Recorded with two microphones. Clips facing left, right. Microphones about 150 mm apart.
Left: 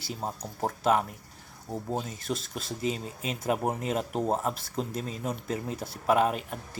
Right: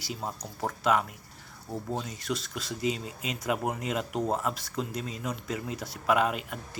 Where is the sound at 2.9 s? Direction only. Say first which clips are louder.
Left 1 dB; 30° left (ahead or behind).